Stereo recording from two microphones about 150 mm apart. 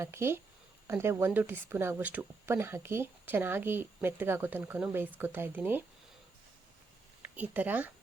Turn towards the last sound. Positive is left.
turn(degrees=-10)  # may be behind; listen again after turning